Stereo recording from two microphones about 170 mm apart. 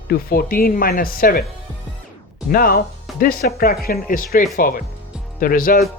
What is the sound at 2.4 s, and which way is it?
Speech, 60° left (ahead or behind).